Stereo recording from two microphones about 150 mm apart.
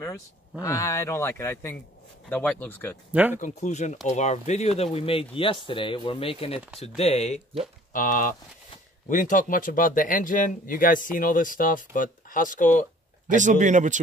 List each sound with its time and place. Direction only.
0.0 s speech: 20° left (ahead or behind)
3.1 s speech: 10° right (ahead or behind)
3.3 s speech: 55° left (ahead or behind)
7.9 s speech: 65° left (ahead or behind)
13.3 s speech: 55° right (ahead or behind)